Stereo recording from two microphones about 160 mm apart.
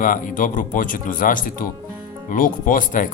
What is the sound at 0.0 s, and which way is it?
Speech, 55° left (ahead or behind).